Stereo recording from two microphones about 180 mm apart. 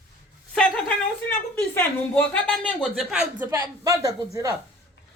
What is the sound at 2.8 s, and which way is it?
A man's voice, 5° right (ahead or behind).